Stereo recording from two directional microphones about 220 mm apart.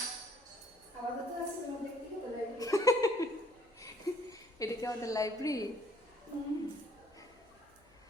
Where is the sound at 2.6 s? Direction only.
15° left (ahead or behind).